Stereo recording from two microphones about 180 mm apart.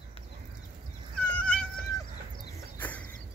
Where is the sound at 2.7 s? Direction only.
10° left (ahead or behind).